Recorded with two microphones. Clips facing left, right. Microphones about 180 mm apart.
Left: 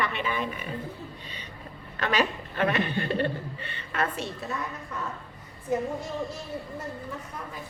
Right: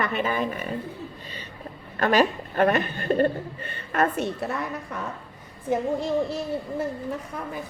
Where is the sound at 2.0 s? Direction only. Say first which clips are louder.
Right 6 dB; 45° right (ahead or behind); by 4.6 s 65° right (ahead or behind).